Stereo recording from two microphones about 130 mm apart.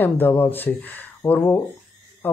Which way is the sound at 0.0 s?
15° left (ahead or behind).